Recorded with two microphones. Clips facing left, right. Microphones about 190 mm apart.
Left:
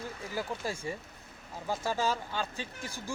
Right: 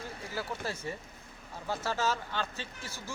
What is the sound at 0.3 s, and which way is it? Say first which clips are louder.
Speech: left 1 dB; 15° left (ahead or behind).